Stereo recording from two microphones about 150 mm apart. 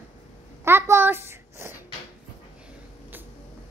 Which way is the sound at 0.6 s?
15° right (ahead or behind).